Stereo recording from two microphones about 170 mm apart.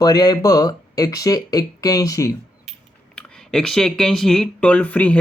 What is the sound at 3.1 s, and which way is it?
Speech, 5° left (ahead or behind).